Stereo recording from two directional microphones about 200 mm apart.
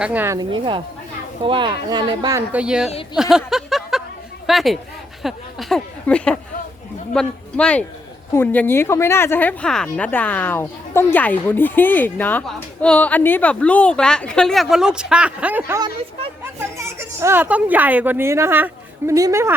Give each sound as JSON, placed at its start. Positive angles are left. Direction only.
{"t": 0.0, "sound": "speech", "side_deg": -10}
{"t": 0.3, "sound": "speech", "side_deg": -25}
{"t": 2.5, "sound": "speech", "side_deg": -5}
{"t": 3.2, "sound": "a sound", "side_deg": 0}
{"t": 4.4, "sound": "a woman's voice", "side_deg": 0}